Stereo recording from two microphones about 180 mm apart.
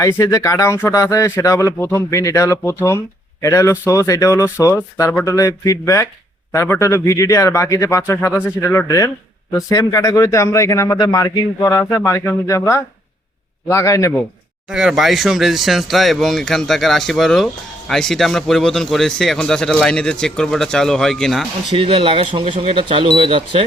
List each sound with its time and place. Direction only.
0.0 s speech: 15° left (ahead or behind)
14.7 s speech: 5° right (ahead or behind)
21.8 s speech: 30° right (ahead or behind)